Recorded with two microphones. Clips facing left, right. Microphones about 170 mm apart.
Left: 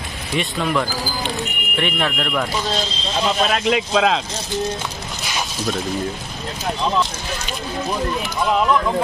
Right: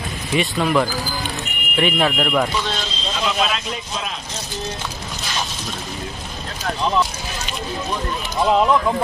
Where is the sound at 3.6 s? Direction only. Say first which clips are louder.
Left 11 dB; 90° left.